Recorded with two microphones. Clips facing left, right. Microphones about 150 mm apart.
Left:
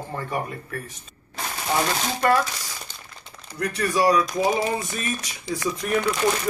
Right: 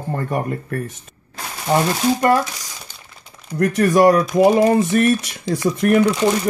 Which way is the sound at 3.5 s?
50° right (ahead or behind).